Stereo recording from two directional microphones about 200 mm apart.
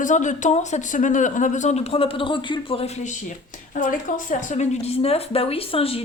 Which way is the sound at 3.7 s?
40° left (ahead or behind).